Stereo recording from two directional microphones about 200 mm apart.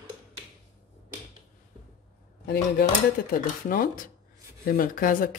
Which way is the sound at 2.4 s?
50° left (ahead or behind).